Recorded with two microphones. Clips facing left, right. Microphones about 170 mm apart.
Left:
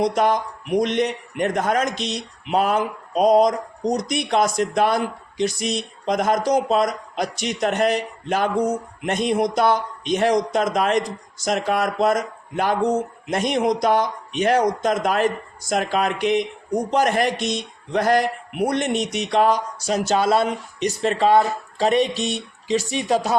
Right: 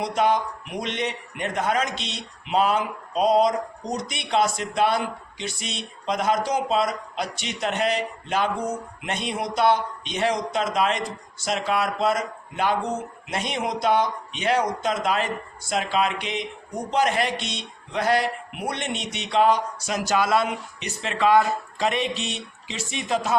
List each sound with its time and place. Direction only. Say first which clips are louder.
0.0 s a woman's voice: left 3 dB; 45° left (ahead or behind)